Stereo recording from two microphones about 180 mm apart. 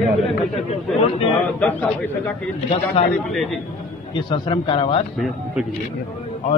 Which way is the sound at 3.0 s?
35° left (ahead or behind).